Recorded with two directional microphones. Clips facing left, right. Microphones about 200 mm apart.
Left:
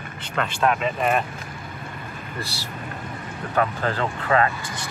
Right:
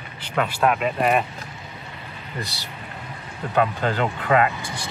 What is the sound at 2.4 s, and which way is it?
Speech, 20° right (ahead or behind).